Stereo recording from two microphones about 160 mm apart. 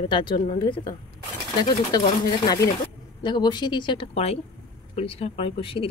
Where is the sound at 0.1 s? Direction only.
30° left (ahead or behind).